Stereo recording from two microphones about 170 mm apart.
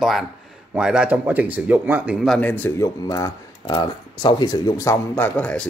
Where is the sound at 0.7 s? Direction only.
5° right (ahead or behind).